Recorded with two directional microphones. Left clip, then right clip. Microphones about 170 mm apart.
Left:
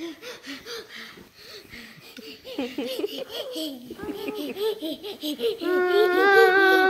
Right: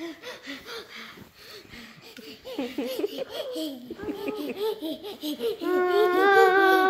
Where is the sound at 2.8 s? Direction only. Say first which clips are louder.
Right 1 dB; 5° right (ahead or behind).